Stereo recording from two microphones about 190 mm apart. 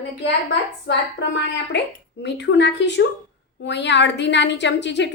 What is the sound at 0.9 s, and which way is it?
A woman's voice, 70° left (ahead or behind).